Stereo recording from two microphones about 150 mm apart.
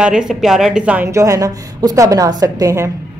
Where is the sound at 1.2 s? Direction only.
20° right (ahead or behind).